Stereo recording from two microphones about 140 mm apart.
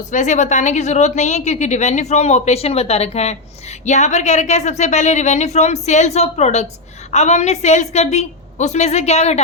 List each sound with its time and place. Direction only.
0.1 s a woman's voice: 60° left (ahead or behind)